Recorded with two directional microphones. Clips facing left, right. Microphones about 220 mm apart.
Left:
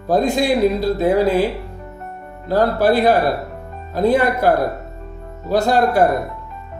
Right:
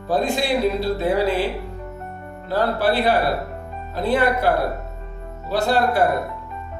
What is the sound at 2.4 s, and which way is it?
Speech, 45° left (ahead or behind).